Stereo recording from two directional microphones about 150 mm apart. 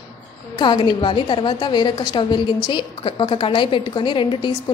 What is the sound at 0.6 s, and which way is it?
A woman's voice, 30° left (ahead or behind).